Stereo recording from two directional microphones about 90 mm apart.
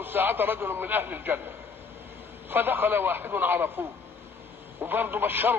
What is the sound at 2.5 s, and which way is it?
A man's voice, 25° right (ahead or behind).